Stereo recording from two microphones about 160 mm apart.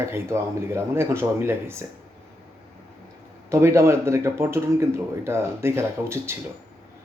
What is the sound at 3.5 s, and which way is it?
Speech, 15° right (ahead or behind).